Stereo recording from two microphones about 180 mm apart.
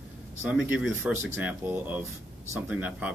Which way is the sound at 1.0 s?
5° right (ahead or behind).